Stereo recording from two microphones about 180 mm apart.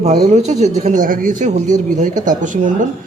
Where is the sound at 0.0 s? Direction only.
35° right (ahead or behind).